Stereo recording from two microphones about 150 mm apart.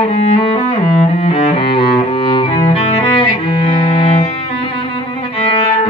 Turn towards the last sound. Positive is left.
turn(degrees=35)  # may be behind; listen again after turning